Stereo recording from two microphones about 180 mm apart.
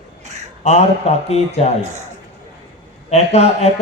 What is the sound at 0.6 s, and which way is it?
Speech, 35° left (ahead or behind).